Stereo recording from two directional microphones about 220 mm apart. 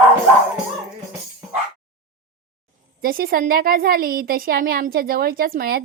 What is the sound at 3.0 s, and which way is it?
A woman's voice, 40° right (ahead or behind).